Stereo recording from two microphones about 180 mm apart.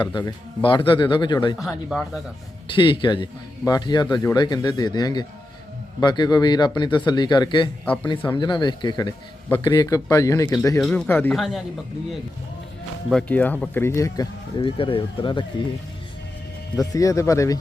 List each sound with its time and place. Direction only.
0.0 s speech: 25° left (ahead or behind)
1.5 s speech: centre (ahead or behind)
2.6 s speech: 30° left (ahead or behind)
10.8 s speech: 5° left (ahead or behind)
13.1 s speech: 5° left (ahead or behind); by 15.6 s 25° left (ahead or behind)
16.7 s speech: 20° left (ahead or behind)